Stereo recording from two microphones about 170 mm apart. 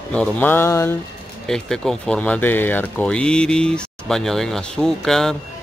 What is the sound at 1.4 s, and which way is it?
Speech, 5° left (ahead or behind).